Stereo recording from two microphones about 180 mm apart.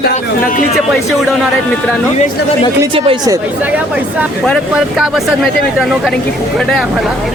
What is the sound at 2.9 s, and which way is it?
Speech, 30° right (ahead or behind).